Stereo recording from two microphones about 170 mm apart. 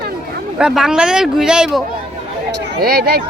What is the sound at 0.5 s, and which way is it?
Speech, 5° right (ahead or behind).